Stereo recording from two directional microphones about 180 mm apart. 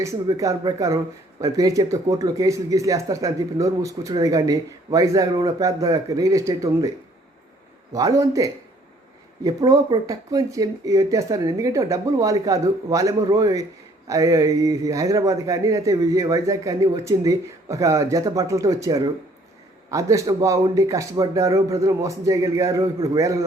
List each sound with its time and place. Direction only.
0.0 s speech: 15° right (ahead or behind)
7.9 s speech: 20° right (ahead or behind)